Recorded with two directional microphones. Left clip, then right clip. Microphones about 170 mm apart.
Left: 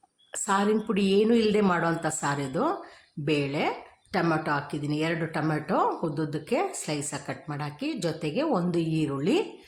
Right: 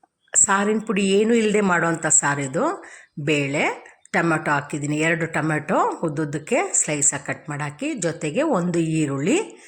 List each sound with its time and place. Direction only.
0.3 s speech: 10° right (ahead or behind)